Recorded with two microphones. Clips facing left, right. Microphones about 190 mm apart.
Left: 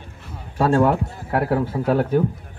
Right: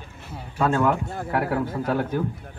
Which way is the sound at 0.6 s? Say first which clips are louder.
Left 4 dB; 35° left (ahead or behind).